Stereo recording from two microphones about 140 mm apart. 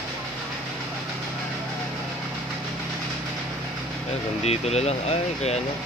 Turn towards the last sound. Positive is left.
turn(degrees=50)  # may be behind; listen again after turning